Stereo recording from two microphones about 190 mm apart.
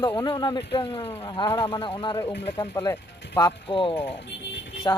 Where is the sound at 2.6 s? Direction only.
15° left (ahead or behind).